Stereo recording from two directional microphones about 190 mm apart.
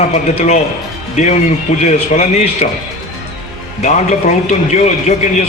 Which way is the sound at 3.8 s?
40° left (ahead or behind).